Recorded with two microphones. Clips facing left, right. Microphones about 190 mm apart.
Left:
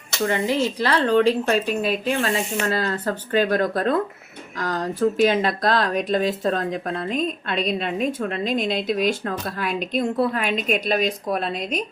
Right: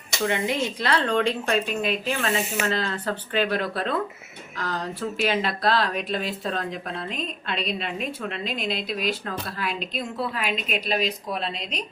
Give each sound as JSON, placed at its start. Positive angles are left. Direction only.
{"t": 0.3, "sound": "a woman's voice", "side_deg": 35}